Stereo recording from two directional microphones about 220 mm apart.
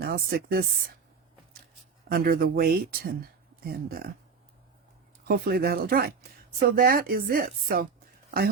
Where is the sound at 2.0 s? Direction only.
40° right (ahead or behind).